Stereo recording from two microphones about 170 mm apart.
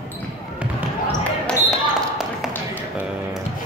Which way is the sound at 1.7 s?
Centre (ahead or behind).